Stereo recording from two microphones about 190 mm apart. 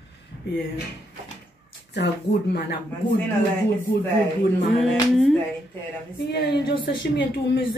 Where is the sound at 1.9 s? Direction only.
60° left (ahead or behind).